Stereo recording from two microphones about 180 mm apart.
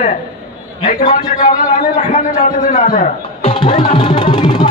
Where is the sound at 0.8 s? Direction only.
45° left (ahead or behind).